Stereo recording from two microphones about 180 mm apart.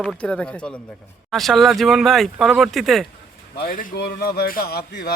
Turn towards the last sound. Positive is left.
turn(degrees=60)  # may be behind; listen again after turning